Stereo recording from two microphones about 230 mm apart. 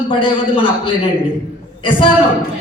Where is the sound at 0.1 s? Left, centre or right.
Left.